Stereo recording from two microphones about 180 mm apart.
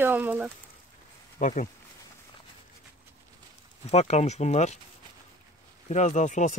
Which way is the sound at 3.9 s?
35° left (ahead or behind).